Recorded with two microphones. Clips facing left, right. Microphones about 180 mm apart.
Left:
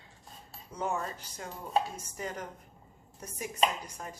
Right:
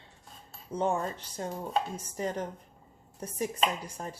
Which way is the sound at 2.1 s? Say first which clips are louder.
Right 7 dB; 30° right (ahead or behind).